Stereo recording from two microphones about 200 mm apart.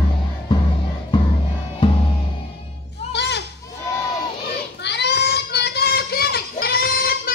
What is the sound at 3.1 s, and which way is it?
Music, 60° left (ahead or behind).